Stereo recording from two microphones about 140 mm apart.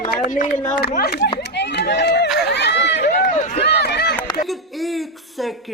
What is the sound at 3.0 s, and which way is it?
Run, 60° left (ahead or behind).